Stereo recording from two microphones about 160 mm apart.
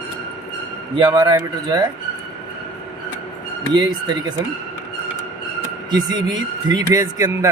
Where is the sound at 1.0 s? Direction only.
25° right (ahead or behind).